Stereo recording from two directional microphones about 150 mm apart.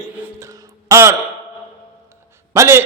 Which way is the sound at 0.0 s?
10° right (ahead or behind).